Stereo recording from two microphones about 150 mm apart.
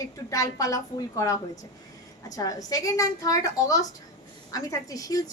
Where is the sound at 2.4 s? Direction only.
25° left (ahead or behind).